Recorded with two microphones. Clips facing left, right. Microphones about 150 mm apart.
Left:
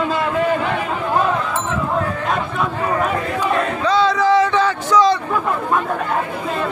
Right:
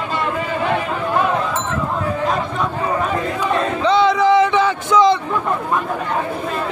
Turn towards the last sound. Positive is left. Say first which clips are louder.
# right 1 dB
turn(degrees=-20)  # may be behind; listen again after turning